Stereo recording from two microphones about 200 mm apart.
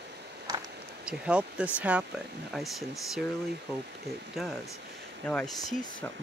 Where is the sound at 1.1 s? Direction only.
5° right (ahead or behind).